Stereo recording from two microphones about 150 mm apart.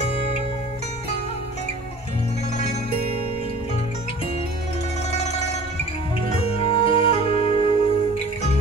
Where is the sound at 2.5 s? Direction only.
45° left (ahead or behind).